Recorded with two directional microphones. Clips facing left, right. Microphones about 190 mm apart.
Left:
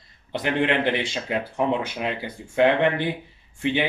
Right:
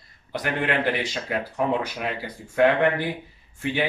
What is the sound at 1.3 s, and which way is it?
Speech, 20° left (ahead or behind).